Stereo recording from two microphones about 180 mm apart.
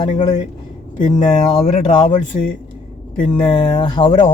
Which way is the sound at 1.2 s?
35° left (ahead or behind).